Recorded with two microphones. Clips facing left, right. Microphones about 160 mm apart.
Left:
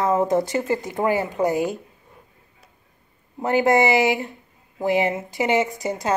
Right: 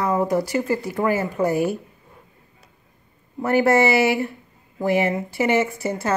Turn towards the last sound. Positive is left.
turn(degrees=15)  # may be behind; listen again after turning